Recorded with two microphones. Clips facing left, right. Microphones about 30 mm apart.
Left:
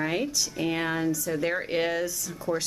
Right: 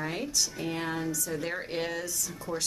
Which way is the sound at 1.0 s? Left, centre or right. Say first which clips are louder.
Left 6 dB; centre.